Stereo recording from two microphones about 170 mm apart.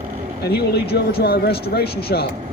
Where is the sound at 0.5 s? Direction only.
70° left (ahead or behind).